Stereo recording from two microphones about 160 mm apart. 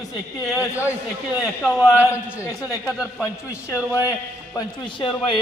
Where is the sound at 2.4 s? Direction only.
20° left (ahead or behind).